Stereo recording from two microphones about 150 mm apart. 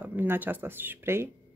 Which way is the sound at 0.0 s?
10° right (ahead or behind).